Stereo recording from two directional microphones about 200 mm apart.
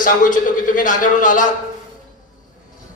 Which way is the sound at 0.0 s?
40° left (ahead or behind).